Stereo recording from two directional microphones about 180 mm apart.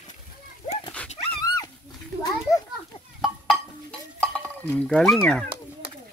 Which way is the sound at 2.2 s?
20° left (ahead or behind).